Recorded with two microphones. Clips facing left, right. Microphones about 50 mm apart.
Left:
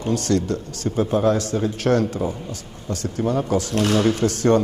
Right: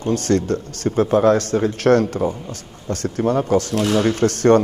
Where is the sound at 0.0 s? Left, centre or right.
Right.